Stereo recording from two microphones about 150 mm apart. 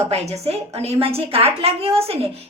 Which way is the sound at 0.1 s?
45° right (ahead or behind).